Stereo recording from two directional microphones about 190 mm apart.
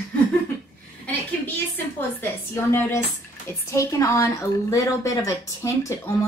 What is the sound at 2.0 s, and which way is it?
A woman's voice, 10° left (ahead or behind).